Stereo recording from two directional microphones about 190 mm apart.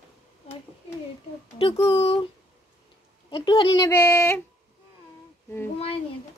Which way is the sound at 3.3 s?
25° left (ahead or behind).